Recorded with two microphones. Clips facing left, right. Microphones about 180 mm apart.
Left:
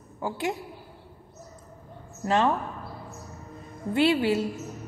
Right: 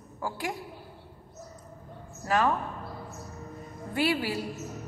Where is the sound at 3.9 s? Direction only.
25° left (ahead or behind).